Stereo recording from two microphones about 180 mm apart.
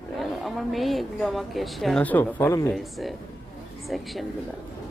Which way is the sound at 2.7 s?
Centre (ahead or behind).